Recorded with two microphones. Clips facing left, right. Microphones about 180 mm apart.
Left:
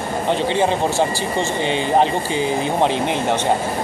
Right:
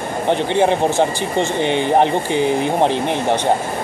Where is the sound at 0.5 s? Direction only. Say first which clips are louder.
Right 5 dB; 15° right (ahead or behind).